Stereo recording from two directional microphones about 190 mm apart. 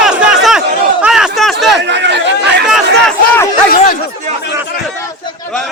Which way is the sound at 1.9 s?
65° right (ahead or behind).